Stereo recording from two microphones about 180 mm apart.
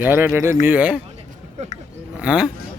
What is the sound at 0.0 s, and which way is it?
Speech, 10° right (ahead or behind).